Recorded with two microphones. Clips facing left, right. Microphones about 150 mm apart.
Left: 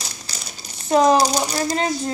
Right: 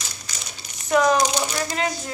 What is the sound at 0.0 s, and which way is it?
Speech, 35° left (ahead or behind).